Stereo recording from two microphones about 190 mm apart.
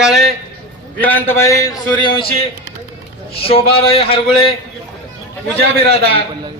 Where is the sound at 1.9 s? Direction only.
25° left (ahead or behind).